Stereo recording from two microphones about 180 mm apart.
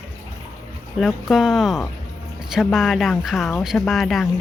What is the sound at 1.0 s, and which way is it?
Speech, centre (ahead or behind).